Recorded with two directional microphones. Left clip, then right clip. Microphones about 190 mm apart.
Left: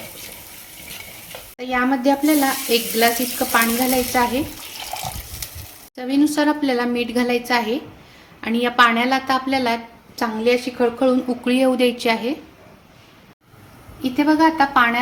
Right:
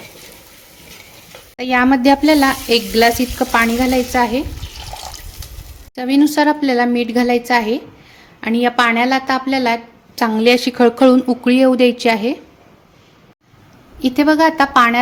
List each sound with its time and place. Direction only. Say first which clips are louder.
1.5 s sizzle: right 6 dB; 45° right (ahead or behind)
6.0 s a woman's voice: right 5 dB; 40° right (ahead or behind)
10.2 s a woman's voice: right 6 dB; 45° right (ahead or behind)
14.0 s sizzle: right 4 dB; 50° right (ahead or behind)